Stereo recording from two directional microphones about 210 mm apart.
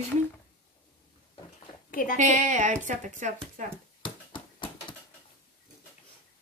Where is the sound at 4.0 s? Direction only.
25° left (ahead or behind).